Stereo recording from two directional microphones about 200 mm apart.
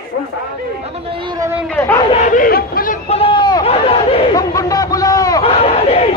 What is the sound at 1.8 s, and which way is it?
Chatter, 10° left (ahead or behind).